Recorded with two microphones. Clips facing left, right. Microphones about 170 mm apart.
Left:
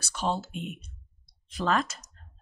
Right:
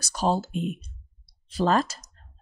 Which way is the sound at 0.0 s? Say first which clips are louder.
Right 5 dB; 40° right (ahead or behind).